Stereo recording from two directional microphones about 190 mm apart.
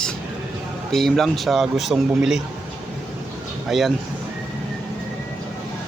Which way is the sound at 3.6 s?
Centre (ahead or behind).